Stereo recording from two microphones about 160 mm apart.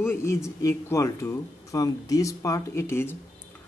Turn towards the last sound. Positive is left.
turn(degrees=15)  # may be behind; listen again after turning